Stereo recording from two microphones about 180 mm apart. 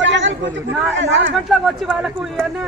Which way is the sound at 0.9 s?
90° right.